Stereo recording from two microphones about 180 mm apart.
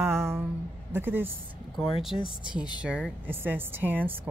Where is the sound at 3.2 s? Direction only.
10° right (ahead or behind).